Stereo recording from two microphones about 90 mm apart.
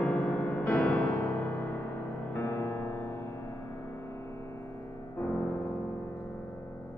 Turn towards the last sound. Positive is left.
turn(degrees=20)  # may be behind; listen again after turning